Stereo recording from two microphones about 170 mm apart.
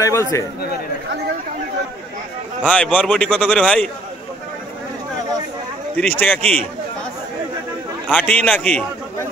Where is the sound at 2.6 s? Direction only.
5° left (ahead or behind).